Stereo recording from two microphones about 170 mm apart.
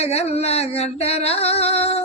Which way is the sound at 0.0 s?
40° left (ahead or behind).